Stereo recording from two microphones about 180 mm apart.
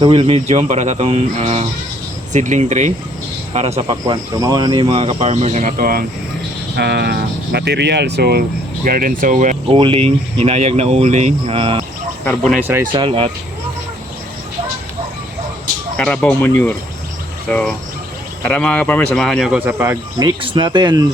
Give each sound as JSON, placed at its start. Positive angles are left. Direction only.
{"t": 0.0, "sound": "speech", "side_deg": -30}
{"t": 3.8, "sound": "speech", "side_deg": -20}
{"t": 6.7, "sound": "speech", "side_deg": -65}
{"t": 9.7, "sound": "speech", "side_deg": -30}
{"t": 12.2, "sound": "speech", "side_deg": 5}
{"t": 12.9, "sound": "speech", "side_deg": -30}
{"t": 16.0, "sound": "speech", "side_deg": 10}
{"t": 19.5, "sound": "speech", "side_deg": -10}